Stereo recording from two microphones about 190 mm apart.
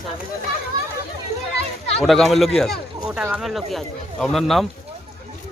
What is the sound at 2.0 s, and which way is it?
Speech, centre (ahead or behind).